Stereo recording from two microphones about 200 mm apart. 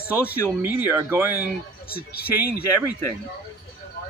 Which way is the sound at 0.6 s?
10° right (ahead or behind).